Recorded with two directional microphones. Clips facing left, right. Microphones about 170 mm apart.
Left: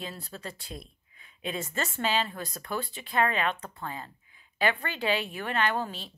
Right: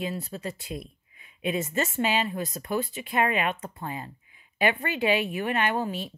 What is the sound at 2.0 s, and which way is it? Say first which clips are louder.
Speech: right 3 dB; 15° right (ahead or behind).